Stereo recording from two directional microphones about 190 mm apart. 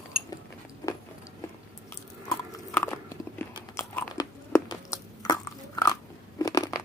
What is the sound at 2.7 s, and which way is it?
Chewing, 10° left (ahead or behind).